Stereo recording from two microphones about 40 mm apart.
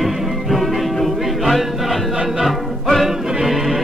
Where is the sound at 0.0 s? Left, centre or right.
Centre.